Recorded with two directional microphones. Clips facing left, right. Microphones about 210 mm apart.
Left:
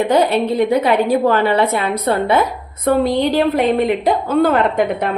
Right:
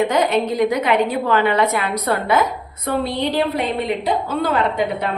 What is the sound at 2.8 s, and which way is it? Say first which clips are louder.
A woman's voice: left 6 dB; 45° left (ahead or behind).